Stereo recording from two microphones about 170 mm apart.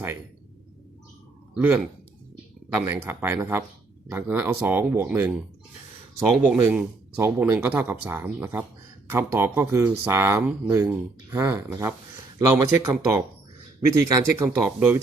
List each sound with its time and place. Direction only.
1.5 s speech: 10° right (ahead or behind)
14.8 s speech: 10° right (ahead or behind)